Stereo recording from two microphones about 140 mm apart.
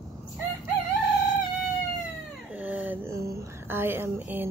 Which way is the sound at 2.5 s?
10° right (ahead or behind).